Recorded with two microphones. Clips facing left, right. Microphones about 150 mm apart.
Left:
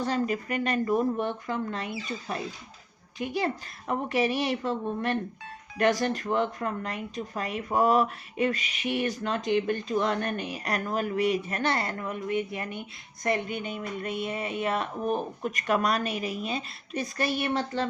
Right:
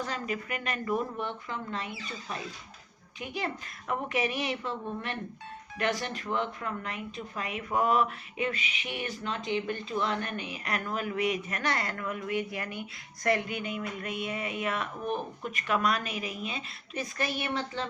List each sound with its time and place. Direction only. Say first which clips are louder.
0.0 s speech: left 6 dB; 35° left (ahead or behind)
3.2 s speech: left 6 dB; 35° left (ahead or behind)